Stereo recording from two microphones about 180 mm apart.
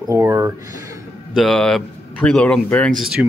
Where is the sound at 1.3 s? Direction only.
5° left (ahead or behind).